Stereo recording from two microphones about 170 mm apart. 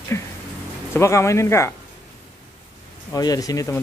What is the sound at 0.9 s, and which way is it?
Speech, 15° left (ahead or behind).